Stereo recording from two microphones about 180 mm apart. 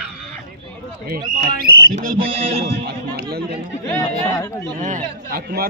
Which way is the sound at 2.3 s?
30° right (ahead or behind).